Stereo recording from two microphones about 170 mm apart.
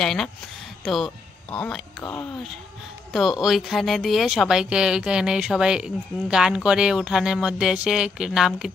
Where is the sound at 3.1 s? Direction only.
Centre (ahead or behind).